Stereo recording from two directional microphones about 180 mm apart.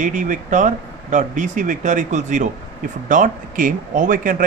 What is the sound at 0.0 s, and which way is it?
Speech, 45° right (ahead or behind).